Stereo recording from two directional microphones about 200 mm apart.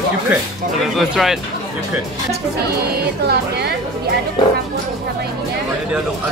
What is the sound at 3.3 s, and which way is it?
Speech, 55° right (ahead or behind).